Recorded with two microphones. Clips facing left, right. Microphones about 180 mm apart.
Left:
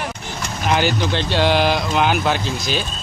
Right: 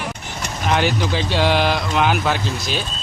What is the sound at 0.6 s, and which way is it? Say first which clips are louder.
Speech: even; centre (ahead or behind).